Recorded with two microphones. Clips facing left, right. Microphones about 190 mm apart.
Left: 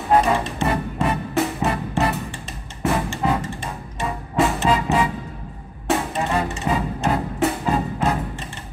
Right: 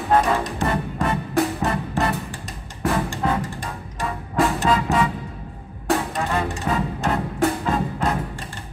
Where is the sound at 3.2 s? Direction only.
5° left (ahead or behind).